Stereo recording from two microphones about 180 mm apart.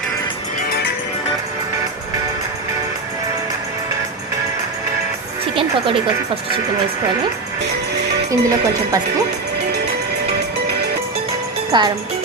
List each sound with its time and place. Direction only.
8.3 s music: 20° right (ahead or behind)
11.7 s music: 25° right (ahead or behind)